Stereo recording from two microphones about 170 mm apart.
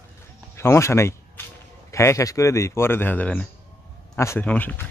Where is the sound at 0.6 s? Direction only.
15° left (ahead or behind).